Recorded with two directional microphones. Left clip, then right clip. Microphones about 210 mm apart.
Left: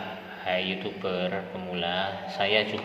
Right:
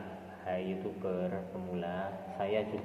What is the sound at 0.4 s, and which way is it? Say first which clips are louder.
Speech: left 8 dB; 15° left (ahead or behind).